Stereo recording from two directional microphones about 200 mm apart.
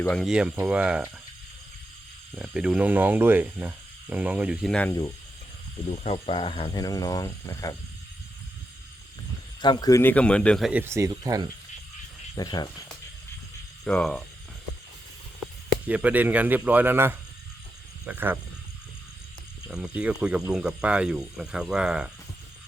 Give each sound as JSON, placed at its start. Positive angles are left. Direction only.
{"t": 0.0, "sound": "speech", "side_deg": 5}
{"t": 2.3, "sound": "speech", "side_deg": -5}
{"t": 4.7, "sound": "speech", "side_deg": 5}
{"t": 5.9, "sound": "speech", "side_deg": 30}
{"t": 9.6, "sound": "speech", "side_deg": 20}
{"t": 10.7, "sound": "speech", "side_deg": -10}
{"t": 12.3, "sound": "speech", "side_deg": 20}
{"t": 13.8, "sound": "speech", "side_deg": 5}
{"t": 15.9, "sound": "speech", "side_deg": -10}
{"t": 19.6, "sound": "speech", "side_deg": -5}